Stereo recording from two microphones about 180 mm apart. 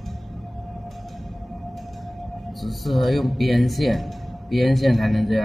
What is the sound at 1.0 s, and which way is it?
Music, centre (ahead or behind).